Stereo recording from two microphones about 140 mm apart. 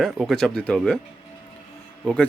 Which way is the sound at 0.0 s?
Centre (ahead or behind).